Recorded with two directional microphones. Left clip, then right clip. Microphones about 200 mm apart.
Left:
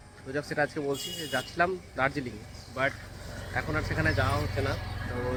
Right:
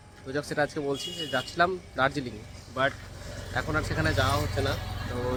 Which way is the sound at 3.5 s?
15° right (ahead or behind).